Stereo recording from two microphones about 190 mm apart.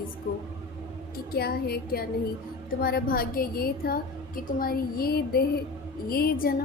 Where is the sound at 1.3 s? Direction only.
55° left (ahead or behind).